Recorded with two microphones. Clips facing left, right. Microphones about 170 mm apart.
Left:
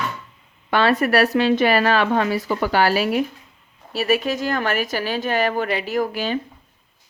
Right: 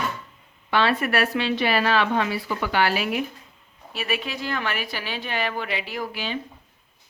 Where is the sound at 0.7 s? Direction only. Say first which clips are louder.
Left 4 dB; 45° left (ahead or behind).